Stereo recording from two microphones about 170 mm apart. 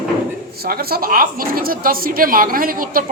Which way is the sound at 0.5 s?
65° right (ahead or behind).